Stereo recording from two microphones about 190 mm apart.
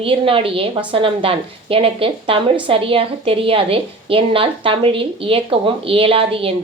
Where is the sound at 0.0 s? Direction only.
30° right (ahead or behind).